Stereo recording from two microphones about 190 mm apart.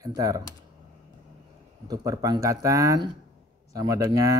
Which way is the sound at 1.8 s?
20° right (ahead or behind).